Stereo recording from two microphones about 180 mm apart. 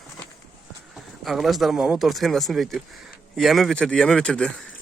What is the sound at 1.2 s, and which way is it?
Speech, centre (ahead or behind).